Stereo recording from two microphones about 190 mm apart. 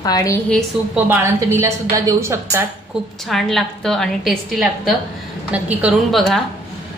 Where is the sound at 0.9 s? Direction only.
15° right (ahead or behind).